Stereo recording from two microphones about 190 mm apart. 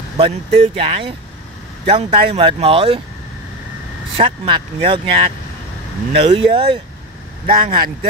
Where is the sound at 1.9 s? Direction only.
25° right (ahead or behind).